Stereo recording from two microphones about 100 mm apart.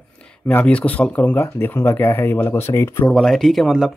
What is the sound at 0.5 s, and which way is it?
Speech, 15° left (ahead or behind).